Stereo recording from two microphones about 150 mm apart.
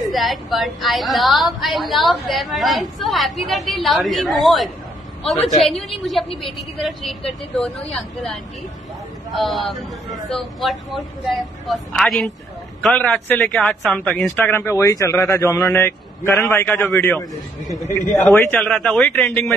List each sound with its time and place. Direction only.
0.1 s a woman's voice: centre (ahead or behind)
9.3 s a woman's voice: centre (ahead or behind); by 16.9 s 15° left (ahead or behind)
18.1 s a woman's voice: 5° left (ahead or behind)